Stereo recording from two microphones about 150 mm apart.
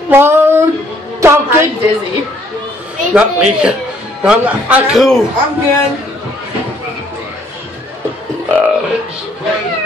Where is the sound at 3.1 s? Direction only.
5° right (ahead or behind).